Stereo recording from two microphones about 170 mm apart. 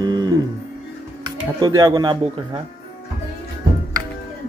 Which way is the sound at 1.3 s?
25° right (ahead or behind).